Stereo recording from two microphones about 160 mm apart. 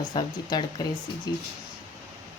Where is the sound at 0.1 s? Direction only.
30° left (ahead or behind).